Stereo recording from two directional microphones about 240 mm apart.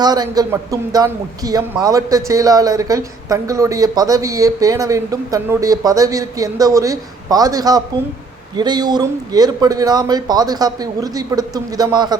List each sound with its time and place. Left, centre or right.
0.0 s a man's voice: centre